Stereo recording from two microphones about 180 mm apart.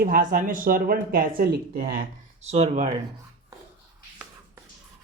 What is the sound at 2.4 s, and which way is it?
Speech, 35° right (ahead or behind).